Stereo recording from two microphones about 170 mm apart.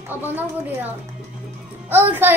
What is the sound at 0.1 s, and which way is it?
A child's voice, 10° right (ahead or behind).